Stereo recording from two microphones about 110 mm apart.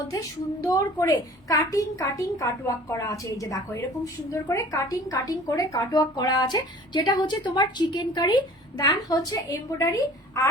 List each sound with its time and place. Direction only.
0.1 s a woman's voice: 30° left (ahead or behind)